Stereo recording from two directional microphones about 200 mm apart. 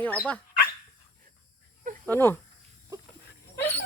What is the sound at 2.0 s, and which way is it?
Speech, 10° left (ahead or behind).